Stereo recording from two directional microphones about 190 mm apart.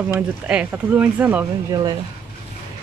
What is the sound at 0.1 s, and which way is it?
Speech, 5° right (ahead or behind).